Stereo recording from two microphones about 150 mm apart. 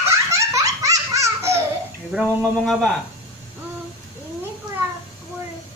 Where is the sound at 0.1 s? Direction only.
20° right (ahead or behind).